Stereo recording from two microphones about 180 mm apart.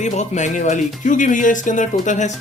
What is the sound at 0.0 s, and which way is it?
Speech, 40° left (ahead or behind).